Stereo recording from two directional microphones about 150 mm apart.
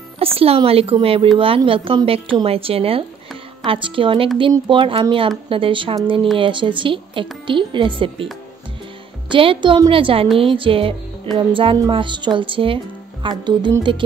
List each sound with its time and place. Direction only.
0.2 s speech: 40° right (ahead or behind)
9.3 s speech: 35° right (ahead or behind)